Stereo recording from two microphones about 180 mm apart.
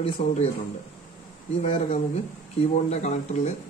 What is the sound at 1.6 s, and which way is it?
Speech, 35° left (ahead or behind).